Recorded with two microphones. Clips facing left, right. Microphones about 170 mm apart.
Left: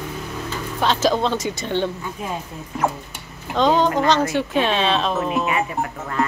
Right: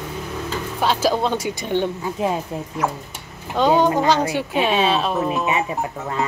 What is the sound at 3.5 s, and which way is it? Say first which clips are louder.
Speech: right 1 dB; 10° right (ahead or behind).